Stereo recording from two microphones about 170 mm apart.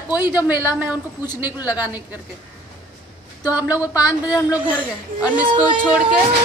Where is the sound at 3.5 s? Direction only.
10° right (ahead or behind).